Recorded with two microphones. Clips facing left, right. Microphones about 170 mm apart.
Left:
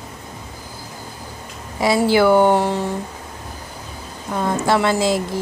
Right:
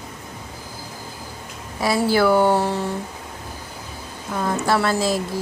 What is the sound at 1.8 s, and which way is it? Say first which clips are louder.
Speech: left 3 dB; 20° left (ahead or behind).